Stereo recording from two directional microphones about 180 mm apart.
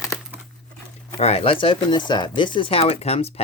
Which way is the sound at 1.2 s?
35° left (ahead or behind).